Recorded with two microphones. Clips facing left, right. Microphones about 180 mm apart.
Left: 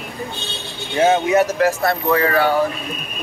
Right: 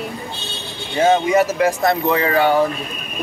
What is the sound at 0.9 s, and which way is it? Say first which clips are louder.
Speech: even; 5° left (ahead or behind).